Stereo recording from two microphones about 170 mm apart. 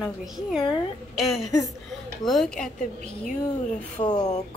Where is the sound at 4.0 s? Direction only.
35° left (ahead or behind).